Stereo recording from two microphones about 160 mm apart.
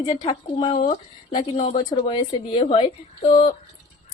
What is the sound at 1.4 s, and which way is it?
Speech, 40° left (ahead or behind).